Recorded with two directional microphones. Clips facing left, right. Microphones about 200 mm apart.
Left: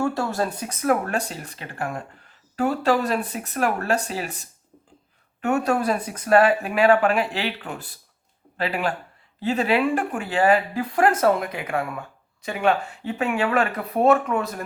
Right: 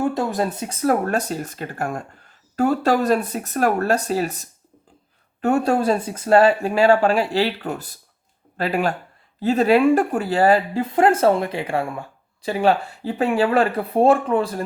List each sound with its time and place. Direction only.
0.0 s speech: 20° right (ahead or behind); by 10.6 s 35° right (ahead or behind)
10.8 s speech: 25° right (ahead or behind)